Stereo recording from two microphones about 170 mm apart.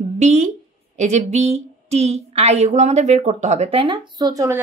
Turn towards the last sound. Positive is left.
turn(degrees=-20)  # may be behind; listen again after turning